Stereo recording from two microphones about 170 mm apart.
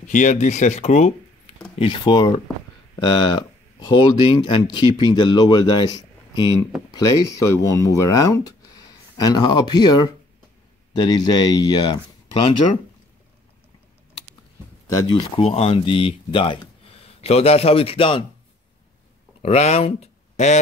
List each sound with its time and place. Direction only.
0.1 s speech: 50° left (ahead or behind)
1.8 s speech: 25° left (ahead or behind)
14.9 s speech: 20° left (ahead or behind)
15.1 s speech: 35° left (ahead or behind)
19.4 s speech: 40° left (ahead or behind)